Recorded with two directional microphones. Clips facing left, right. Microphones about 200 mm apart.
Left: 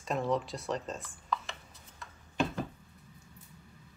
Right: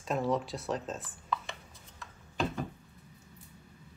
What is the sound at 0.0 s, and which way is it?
Speech, centre (ahead or behind).